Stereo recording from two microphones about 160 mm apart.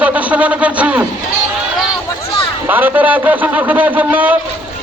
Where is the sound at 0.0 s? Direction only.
10° right (ahead or behind).